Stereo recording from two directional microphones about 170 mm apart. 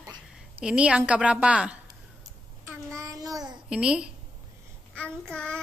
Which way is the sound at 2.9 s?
20° right (ahead or behind).